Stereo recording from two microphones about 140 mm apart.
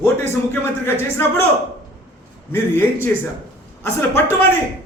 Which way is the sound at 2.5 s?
15° left (ahead or behind).